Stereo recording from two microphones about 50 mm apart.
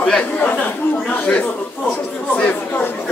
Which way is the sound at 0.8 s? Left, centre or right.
Left.